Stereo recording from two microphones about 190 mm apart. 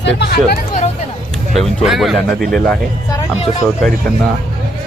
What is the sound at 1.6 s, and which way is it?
Speech, centre (ahead or behind).